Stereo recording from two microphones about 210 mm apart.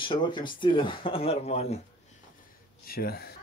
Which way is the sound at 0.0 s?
20° left (ahead or behind).